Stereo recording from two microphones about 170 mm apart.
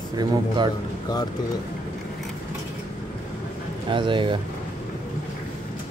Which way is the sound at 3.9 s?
30° right (ahead or behind).